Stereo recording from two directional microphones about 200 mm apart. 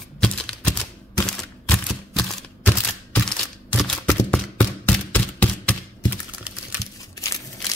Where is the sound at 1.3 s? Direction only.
5° left (ahead or behind).